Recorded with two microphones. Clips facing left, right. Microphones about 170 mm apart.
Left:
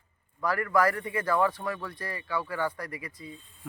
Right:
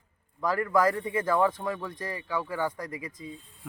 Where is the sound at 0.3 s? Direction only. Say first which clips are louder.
Right 1 dB; 20° right (ahead or behind).